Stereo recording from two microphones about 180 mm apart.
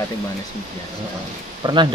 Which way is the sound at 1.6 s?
25° right (ahead or behind).